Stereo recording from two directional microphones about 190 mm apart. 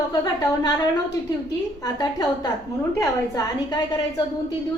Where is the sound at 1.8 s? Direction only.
20° left (ahead or behind).